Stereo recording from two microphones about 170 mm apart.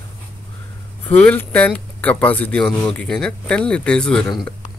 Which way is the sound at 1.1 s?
10° left (ahead or behind).